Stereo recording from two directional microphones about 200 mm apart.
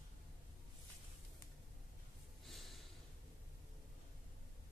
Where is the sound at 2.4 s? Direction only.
Centre (ahead or behind).